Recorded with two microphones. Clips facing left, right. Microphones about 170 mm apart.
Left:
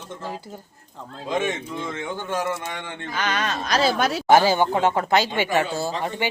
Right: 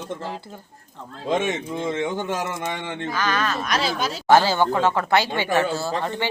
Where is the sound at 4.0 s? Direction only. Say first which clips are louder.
Left 4 dB; 65° left (ahead or behind).